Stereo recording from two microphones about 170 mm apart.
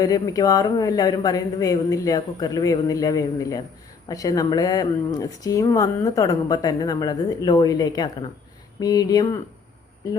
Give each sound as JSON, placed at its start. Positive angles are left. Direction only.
{"t": 0.0, "sound": "speech", "side_deg": 20}